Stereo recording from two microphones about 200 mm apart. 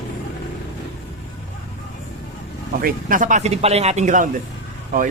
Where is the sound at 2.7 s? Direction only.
45° right (ahead or behind).